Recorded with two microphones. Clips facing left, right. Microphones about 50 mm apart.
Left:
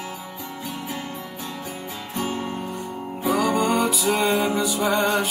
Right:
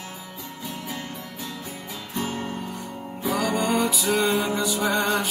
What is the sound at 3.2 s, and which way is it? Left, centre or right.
Music, centre.